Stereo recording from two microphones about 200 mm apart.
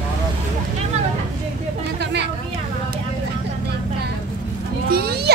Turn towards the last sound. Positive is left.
turn(degrees=-50)  # may be behind; listen again after turning